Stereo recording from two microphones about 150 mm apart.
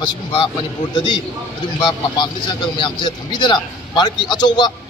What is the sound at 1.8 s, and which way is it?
A man's voice, 30° left (ahead or behind).